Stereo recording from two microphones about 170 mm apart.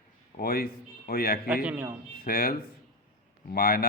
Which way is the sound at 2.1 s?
60° left (ahead or behind).